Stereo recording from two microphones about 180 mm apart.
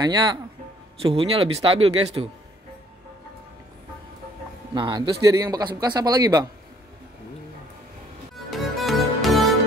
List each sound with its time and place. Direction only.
0.0 s speech: 25° right (ahead or behind)
4.7 s speech: 25° right (ahead or behind)
8.5 s music: centre (ahead or behind)